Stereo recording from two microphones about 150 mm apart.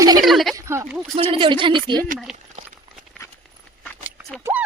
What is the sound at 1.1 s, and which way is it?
Speech, 35° right (ahead or behind).